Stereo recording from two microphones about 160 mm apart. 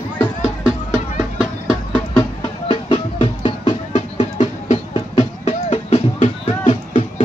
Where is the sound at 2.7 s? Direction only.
35° left (ahead or behind).